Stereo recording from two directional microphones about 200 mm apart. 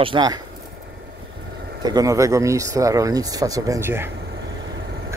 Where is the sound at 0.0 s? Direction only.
20° right (ahead or behind).